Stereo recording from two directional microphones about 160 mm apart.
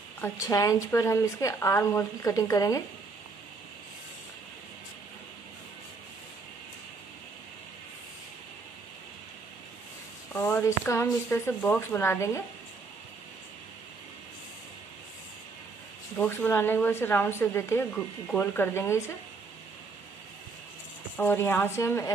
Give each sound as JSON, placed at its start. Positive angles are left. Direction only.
{"t": 0.2, "sound": "speech", "side_deg": 20}
{"t": 10.3, "sound": "speech", "side_deg": 15}
{"t": 16.2, "sound": "speech", "side_deg": 10}
{"t": 21.2, "sound": "speech", "side_deg": 15}